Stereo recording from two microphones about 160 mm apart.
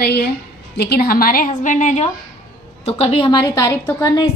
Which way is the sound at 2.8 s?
35° left (ahead or behind).